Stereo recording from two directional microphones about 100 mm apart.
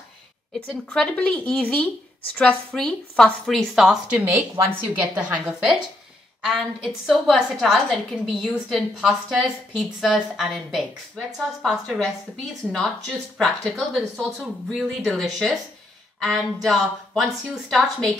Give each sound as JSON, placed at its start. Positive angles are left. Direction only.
{"t": 0.8, "sound": "a woman's voice", "side_deg": 10}
{"t": 4.2, "sound": "a woman's voice", "side_deg": -20}